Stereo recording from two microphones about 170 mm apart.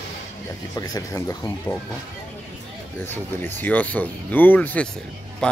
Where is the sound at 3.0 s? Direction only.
10° left (ahead or behind).